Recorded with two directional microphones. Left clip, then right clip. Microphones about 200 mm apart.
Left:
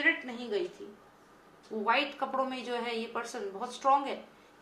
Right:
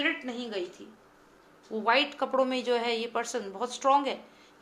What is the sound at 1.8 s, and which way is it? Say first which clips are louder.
Speech: right 3 dB; 50° right (ahead or behind).